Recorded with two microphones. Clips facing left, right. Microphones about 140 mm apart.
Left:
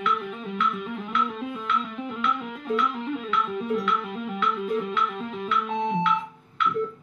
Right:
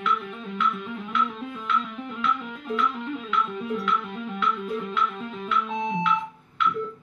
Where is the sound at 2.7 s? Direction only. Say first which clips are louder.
Left 1 dB; centre (ahead or behind).